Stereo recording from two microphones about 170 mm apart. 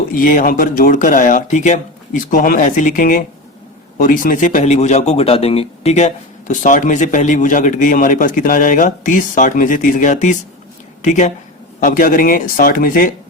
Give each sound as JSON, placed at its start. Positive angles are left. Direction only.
{"t": 0.1, "sound": "a man's voice", "side_deg": 55}